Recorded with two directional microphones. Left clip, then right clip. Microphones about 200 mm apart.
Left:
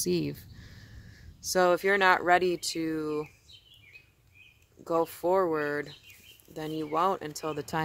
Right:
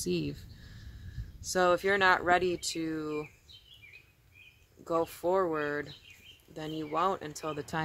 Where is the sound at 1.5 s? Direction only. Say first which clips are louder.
Left 2 dB; 30° left (ahead or behind).